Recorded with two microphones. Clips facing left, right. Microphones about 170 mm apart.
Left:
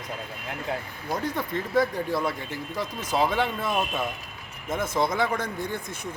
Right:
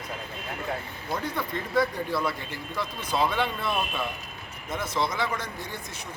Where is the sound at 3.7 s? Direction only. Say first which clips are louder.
Left 2 dB; 15° left (ahead or behind).